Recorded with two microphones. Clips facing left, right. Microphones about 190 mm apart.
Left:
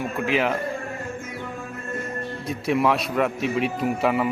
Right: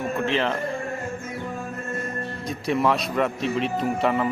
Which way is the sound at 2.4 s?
5° left (ahead or behind).